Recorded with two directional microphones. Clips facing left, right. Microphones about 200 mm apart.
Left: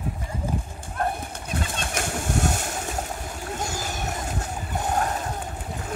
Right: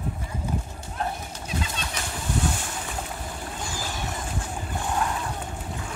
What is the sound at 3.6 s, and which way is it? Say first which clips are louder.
Splash: left 2 dB; 45° left (ahead or behind).